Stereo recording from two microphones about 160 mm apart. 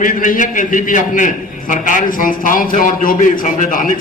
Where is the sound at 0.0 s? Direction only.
60° left (ahead or behind).